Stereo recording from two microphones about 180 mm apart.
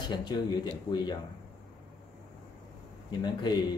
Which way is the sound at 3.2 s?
20° left (ahead or behind).